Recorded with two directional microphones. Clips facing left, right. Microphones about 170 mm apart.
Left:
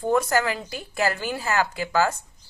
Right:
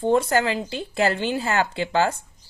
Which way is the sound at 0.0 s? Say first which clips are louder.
Right 2 dB; 25° right (ahead or behind).